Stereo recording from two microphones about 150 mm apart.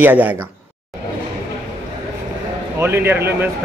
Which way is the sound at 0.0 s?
10° right (ahead or behind).